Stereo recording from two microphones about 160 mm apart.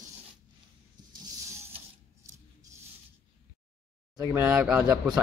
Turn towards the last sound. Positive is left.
turn(degrees=-5)  # may be behind; listen again after turning